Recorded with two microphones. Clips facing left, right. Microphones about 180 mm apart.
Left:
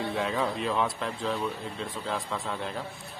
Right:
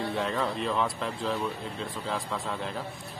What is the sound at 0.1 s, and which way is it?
A man's voice, centre (ahead or behind).